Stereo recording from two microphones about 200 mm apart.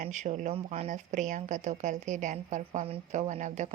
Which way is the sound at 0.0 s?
35° right (ahead or behind).